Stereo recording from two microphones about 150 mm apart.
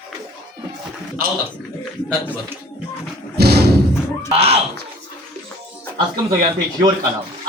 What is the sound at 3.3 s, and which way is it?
Thump, 90° right.